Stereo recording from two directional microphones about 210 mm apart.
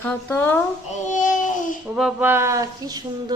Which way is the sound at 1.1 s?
35° left (ahead or behind).